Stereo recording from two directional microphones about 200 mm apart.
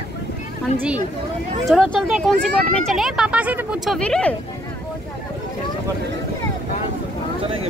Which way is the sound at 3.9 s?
5° left (ahead or behind).